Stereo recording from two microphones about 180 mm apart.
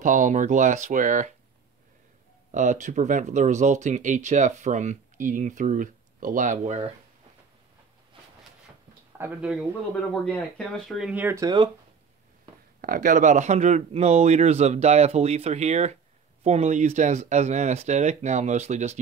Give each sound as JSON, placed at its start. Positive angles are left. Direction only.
{"t": 0.0, "sound": "speech", "side_deg": -45}
{"t": 2.5, "sound": "speech", "side_deg": -45}
{"t": 9.2, "sound": "speech", "side_deg": -5}
{"t": 12.8, "sound": "speech", "side_deg": -50}